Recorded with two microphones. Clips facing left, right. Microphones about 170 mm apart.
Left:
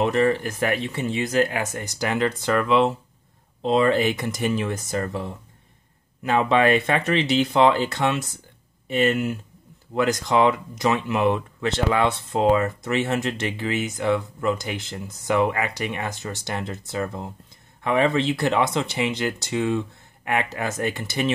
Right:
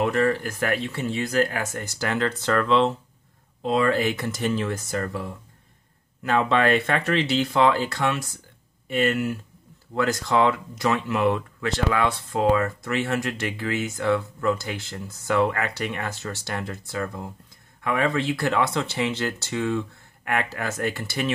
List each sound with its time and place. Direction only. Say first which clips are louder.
0.0 s speech: left 2 dB; 20° left (ahead or behind)
3.6 s speech: left 2 dB; 25° left (ahead or behind)